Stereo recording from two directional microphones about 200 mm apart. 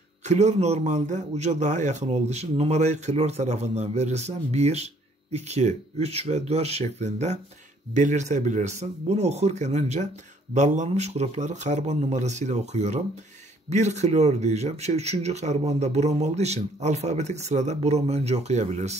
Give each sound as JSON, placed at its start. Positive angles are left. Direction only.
{"t": 0.2, "sound": "speech", "side_deg": -35}